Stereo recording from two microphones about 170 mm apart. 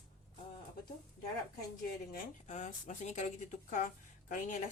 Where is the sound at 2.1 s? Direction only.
45° left (ahead or behind).